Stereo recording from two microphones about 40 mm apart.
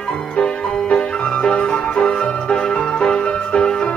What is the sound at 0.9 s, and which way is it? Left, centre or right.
Music, left.